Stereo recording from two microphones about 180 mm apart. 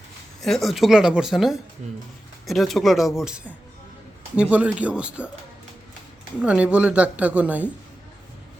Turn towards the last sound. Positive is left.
turn(degrees=-10)  # may be behind; listen again after turning